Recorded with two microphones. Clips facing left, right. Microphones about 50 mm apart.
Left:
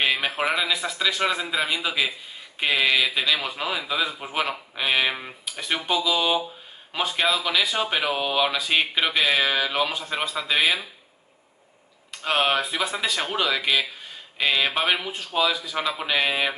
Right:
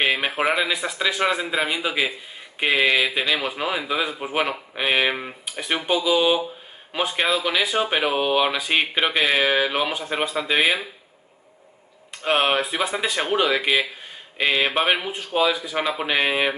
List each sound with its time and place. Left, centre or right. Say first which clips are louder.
0.0 s speech: right 2 dB; centre
12.2 s speech: right 2 dB; right